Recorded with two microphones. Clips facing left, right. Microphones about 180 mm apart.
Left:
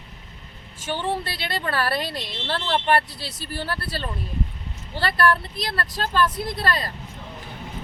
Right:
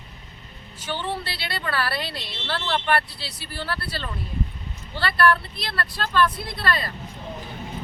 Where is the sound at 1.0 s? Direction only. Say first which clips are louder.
Left 3 dB; 45° left (ahead or behind).